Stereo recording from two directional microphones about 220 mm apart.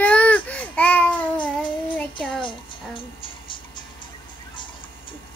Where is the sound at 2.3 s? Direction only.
20° left (ahead or behind).